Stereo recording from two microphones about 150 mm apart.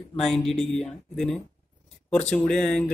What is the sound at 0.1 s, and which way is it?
Speech, centre (ahead or behind).